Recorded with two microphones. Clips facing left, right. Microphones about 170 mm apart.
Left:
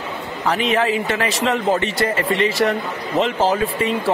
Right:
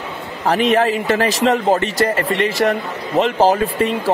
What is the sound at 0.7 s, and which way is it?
A man's voice, 40° right (ahead or behind).